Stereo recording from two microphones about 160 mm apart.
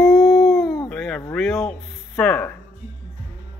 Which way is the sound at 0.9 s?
5° left (ahead or behind).